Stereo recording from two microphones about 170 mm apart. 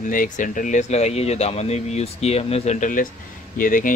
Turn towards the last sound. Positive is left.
turn(degrees=55)  # may be behind; listen again after turning